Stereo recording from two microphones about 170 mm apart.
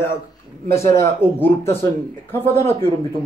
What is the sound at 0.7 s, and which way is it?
A man's voice, 15° left (ahead or behind).